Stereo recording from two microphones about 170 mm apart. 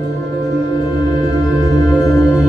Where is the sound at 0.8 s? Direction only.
25° left (ahead or behind).